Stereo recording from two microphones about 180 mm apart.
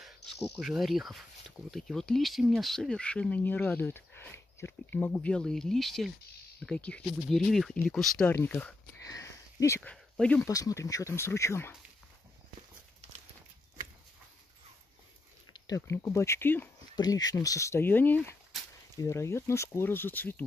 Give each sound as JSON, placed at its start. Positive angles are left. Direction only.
{"t": 0.0, "sound": "speech", "side_deg": 0}
{"t": 10.4, "sound": "speech", "side_deg": 20}
{"t": 15.5, "sound": "speech", "side_deg": 20}
{"t": 16.9, "sound": "speech", "side_deg": 20}